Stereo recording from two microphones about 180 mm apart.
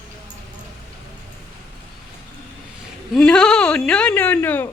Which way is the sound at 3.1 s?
Centre (ahead or behind).